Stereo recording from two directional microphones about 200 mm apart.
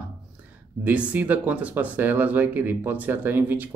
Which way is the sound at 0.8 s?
10° right (ahead or behind).